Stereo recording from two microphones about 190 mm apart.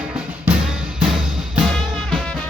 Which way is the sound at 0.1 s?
5° right (ahead or behind).